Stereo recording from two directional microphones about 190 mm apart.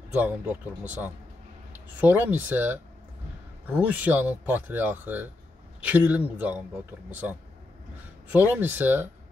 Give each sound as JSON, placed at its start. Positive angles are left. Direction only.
{"t": 0.1, "sound": "speech", "side_deg": -10}